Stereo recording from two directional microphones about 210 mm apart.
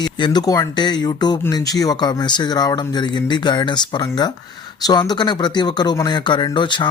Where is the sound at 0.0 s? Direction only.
20° left (ahead or behind).